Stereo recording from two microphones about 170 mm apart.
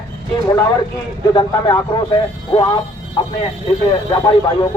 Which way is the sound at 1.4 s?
25° left (ahead or behind).